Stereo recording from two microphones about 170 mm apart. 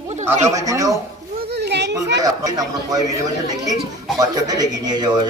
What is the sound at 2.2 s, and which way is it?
Speech, 20° right (ahead or behind).